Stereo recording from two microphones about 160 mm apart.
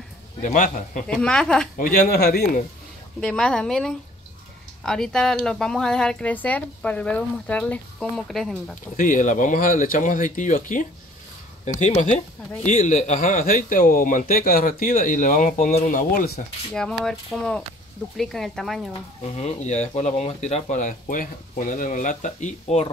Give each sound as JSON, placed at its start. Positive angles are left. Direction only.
{"t": 0.4, "sound": "speech", "side_deg": 50}
{"t": 1.0, "sound": "speech", "side_deg": 5}
{"t": 1.8, "sound": "a man's voice", "side_deg": 65}
{"t": 3.2, "sound": "speech", "side_deg": 5}
{"t": 8.9, "sound": "a man's voice", "side_deg": 55}
{"t": 16.7, "sound": "speech", "side_deg": 5}
{"t": 19.3, "sound": "speech", "side_deg": 45}